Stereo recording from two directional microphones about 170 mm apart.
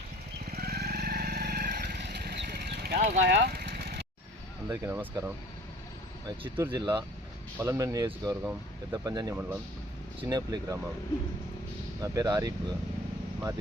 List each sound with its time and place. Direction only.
0.5 s vehicle: 65° right (ahead or behind)
4.7 s speech: 15° right (ahead or behind)
6.2 s speech: 25° right (ahead or behind)
9.3 s speech: 10° right (ahead or behind)
10.2 s speech: 25° right (ahead or behind)
12.0 s speech: 20° right (ahead or behind)